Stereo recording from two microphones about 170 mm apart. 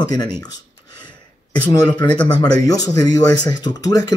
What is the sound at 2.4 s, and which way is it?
Speech, 20° left (ahead or behind).